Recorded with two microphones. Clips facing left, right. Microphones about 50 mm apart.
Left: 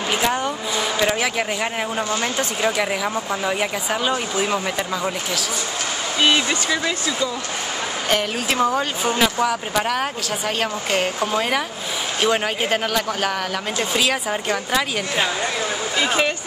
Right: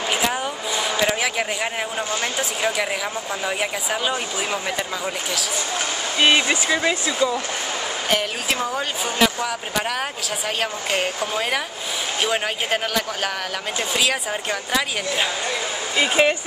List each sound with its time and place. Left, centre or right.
0.1 s speech: centre
6.1 s speech: centre
8.1 s speech: centre
12.2 s speech: centre
16.0 s speech: right